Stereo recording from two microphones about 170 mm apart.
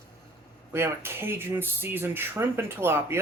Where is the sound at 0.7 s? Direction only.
15° right (ahead or behind).